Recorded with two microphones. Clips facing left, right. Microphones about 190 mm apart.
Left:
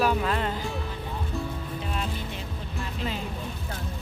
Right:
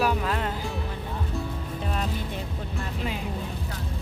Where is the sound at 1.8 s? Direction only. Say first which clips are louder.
Right 4 dB; 40° right (ahead or behind).